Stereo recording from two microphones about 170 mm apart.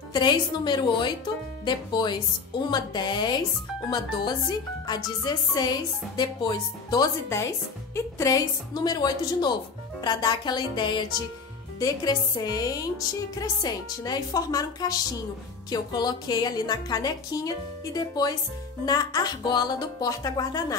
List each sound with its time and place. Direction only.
0.1 s speech: 25° left (ahead or behind)